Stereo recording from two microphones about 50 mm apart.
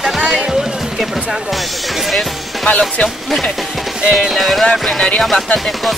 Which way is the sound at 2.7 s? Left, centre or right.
Left.